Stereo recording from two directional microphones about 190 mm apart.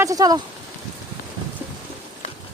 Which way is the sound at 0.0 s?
20° right (ahead or behind).